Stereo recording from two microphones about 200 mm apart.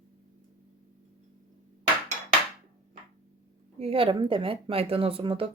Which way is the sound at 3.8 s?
30° right (ahead or behind).